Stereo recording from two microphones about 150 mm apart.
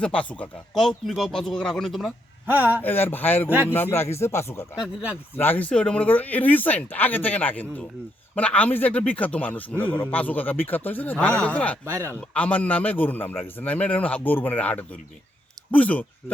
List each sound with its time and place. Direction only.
0.0 s speech: 10° left (ahead or behind)
2.5 s speech: 10° right (ahead or behind)
2.8 s a man's voice: 15° left (ahead or behind)